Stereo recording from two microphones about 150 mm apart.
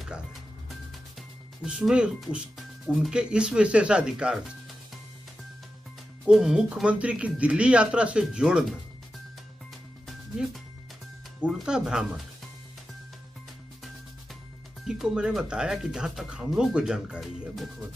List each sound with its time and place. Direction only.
1.6 s speech: 5° right (ahead or behind)
6.2 s speech: 5° right (ahead or behind)
11.4 s speech: 5° right (ahead or behind)
14.9 s speech: 5° right (ahead or behind)